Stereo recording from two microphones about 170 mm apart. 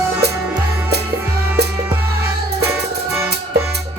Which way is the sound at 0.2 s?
75° right (ahead or behind).